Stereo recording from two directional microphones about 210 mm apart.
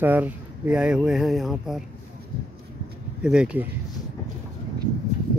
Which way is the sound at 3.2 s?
5° right (ahead or behind).